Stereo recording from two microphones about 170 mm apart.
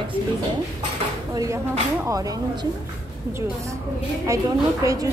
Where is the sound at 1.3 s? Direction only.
20° right (ahead or behind).